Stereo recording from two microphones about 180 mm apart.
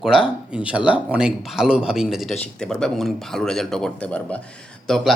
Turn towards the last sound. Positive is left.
turn(degrees=0)  # may be behind; listen again after turning